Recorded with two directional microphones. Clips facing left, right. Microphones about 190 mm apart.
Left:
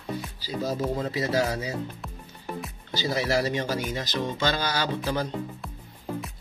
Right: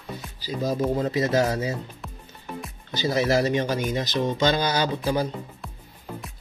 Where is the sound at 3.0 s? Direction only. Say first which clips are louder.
Right 4 dB; 20° right (ahead or behind).